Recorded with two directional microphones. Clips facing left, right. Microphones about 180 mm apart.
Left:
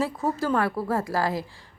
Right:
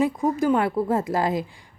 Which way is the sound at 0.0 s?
15° right (ahead or behind).